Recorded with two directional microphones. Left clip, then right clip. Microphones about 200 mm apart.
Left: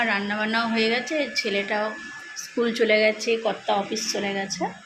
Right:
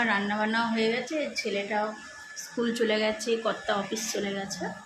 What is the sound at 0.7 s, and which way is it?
A woman's voice, 30° left (ahead or behind).